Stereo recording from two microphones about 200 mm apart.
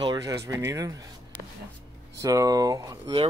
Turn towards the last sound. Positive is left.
turn(degrees=-20)  # may be behind; listen again after turning